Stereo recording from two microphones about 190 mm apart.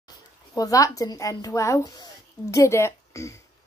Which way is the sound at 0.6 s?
20° left (ahead or behind).